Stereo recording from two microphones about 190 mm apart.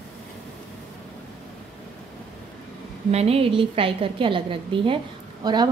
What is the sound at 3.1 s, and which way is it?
A woman's voice, 35° right (ahead or behind).